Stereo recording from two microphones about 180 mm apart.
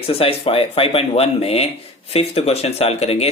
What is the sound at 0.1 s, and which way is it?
Speech, 30° left (ahead or behind).